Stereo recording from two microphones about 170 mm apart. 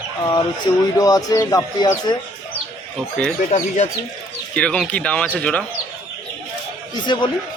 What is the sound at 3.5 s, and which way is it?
Speech, 40° left (ahead or behind).